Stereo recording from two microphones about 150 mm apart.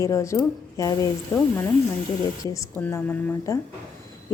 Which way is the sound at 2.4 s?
15° left (ahead or behind).